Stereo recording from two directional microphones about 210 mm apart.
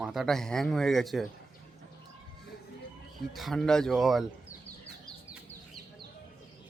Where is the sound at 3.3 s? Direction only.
Centre (ahead or behind).